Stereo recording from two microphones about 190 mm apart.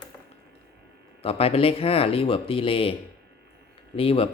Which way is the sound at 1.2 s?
30° left (ahead or behind).